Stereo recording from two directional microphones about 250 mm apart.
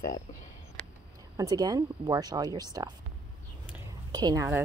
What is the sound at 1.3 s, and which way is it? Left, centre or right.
Speech, centre.